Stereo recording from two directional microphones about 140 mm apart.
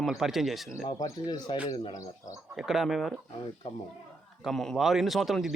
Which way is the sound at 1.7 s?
25° left (ahead or behind).